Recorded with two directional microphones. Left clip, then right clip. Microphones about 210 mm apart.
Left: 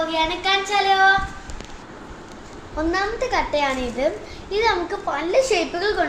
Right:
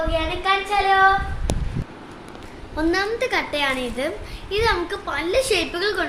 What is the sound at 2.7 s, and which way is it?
A woman's voice, 45° right (ahead or behind).